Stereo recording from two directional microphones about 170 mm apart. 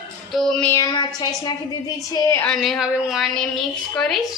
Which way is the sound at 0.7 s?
25° left (ahead or behind).